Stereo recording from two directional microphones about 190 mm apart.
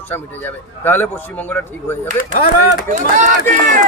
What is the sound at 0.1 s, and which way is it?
Speech, 10° left (ahead or behind).